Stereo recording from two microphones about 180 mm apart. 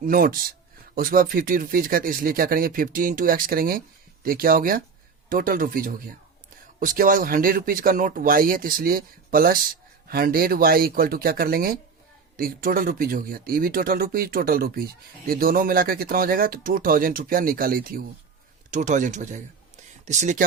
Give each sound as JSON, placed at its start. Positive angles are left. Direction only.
{"t": 0.0, "sound": "speech", "side_deg": -50}